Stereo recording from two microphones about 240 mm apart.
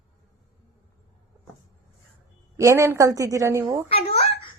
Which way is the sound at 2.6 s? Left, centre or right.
Centre.